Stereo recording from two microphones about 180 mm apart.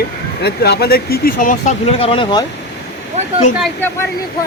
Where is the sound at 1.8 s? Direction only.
30° left (ahead or behind).